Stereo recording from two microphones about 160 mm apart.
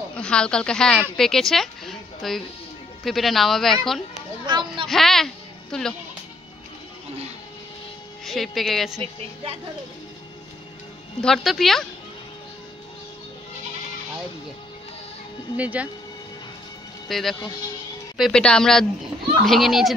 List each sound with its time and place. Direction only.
0.1 s a woman's voice: 5° left (ahead or behind)
4.5 s a sound: 25° right (ahead or behind)
4.8 s a woman's voice: centre (ahead or behind)
8.3 s speech: centre (ahead or behind)
9.0 s a woman's voice: 40° right (ahead or behind)
11.2 s speech: centre (ahead or behind)
15.5 s speech: 10° right (ahead or behind)
17.1 s speech: centre (ahead or behind)